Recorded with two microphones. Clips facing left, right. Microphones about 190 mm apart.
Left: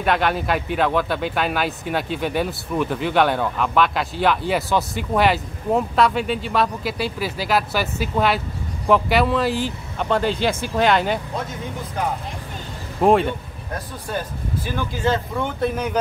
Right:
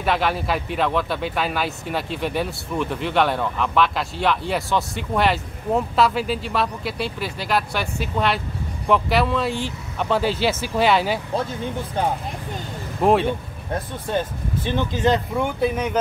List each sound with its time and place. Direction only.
0.0 s speech: centre (ahead or behind)
13.0 s speech: centre (ahead or behind)
13.7 s speech: 25° right (ahead or behind); by 16.0 s 5° right (ahead or behind)